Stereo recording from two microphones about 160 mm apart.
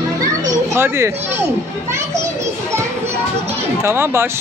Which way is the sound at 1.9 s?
15° right (ahead or behind).